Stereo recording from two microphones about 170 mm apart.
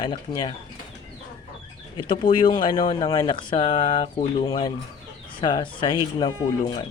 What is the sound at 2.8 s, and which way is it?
Speech, 30° left (ahead or behind).